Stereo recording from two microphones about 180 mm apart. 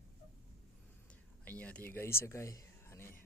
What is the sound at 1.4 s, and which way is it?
Speech, 10° left (ahead or behind).